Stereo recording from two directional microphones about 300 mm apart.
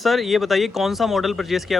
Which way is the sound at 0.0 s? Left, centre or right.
Centre.